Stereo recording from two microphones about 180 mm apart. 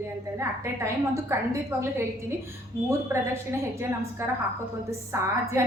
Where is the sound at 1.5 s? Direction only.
15° right (ahead or behind).